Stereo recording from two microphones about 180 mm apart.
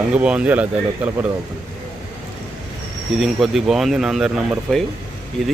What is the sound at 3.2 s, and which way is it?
Speech, centre (ahead or behind).